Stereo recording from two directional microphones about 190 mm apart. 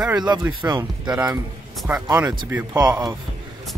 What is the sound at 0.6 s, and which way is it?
Speech, 15° right (ahead or behind).